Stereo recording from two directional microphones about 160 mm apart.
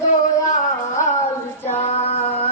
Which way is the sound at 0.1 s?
50° left (ahead or behind).